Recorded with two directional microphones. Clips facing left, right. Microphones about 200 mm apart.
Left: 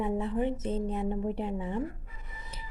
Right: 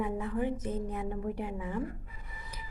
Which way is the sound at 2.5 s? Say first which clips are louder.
Left 1 dB; 25° left (ahead or behind).